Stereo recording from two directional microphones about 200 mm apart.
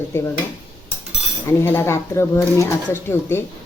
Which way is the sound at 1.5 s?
10° left (ahead or behind).